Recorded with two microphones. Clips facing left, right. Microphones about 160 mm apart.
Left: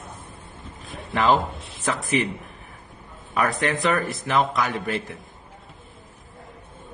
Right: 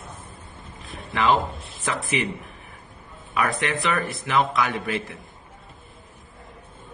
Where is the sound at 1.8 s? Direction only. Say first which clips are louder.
Left 3 dB; 40° left (ahead or behind).